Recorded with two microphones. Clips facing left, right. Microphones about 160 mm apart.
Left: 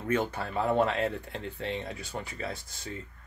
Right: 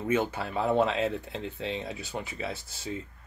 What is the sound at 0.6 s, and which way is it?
Speech, 20° right (ahead or behind).